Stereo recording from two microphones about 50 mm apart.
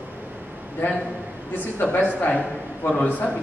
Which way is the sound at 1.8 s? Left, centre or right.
Left.